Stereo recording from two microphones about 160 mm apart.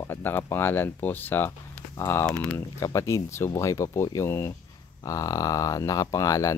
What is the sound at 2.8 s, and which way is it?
Speech, 20° left (ahead or behind).